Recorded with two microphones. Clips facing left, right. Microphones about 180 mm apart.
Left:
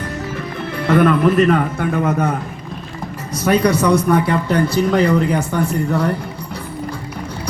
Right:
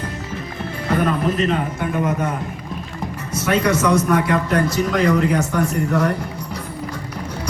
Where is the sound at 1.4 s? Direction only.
55° left (ahead or behind).